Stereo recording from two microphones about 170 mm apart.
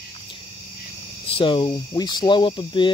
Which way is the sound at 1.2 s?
30° left (ahead or behind).